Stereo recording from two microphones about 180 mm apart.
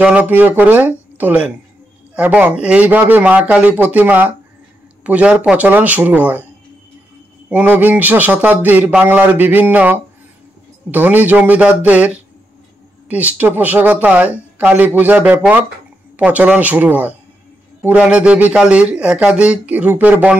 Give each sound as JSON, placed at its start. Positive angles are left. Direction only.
{"t": 0.0, "sound": "speech", "side_deg": -10}
{"t": 7.4, "sound": "speech", "side_deg": -10}
{"t": 13.1, "sound": "speech", "side_deg": -10}